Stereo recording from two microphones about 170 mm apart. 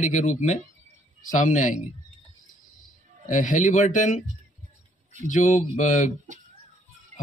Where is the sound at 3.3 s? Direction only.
50° left (ahead or behind).